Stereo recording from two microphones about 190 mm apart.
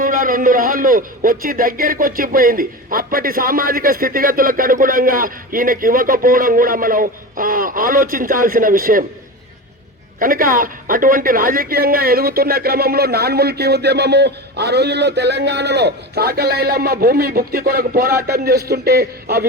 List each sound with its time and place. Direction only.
0.0 s a man's voice: 45° right (ahead or behind)
10.2 s a man's voice: 45° right (ahead or behind)